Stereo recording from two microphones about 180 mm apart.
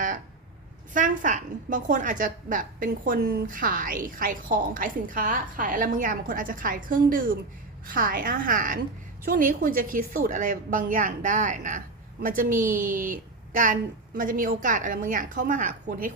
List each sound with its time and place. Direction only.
0.9 s a woman's voice: 45° right (ahead or behind)